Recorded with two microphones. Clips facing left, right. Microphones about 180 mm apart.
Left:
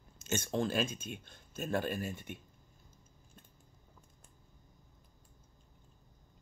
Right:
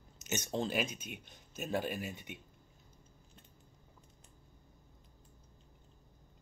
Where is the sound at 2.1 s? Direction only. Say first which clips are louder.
Left 3 dB; 50° left (ahead or behind).